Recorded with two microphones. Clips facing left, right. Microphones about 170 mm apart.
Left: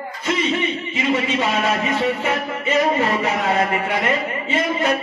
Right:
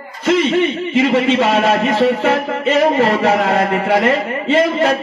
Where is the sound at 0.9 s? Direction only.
70° right (ahead or behind).